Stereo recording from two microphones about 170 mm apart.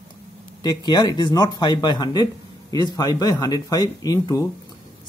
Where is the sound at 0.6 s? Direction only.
25° left (ahead or behind).